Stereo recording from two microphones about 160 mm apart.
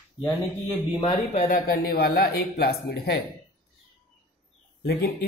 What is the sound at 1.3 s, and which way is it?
Speech, 50° left (ahead or behind).